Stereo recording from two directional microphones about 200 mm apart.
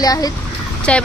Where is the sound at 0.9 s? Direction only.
5° left (ahead or behind).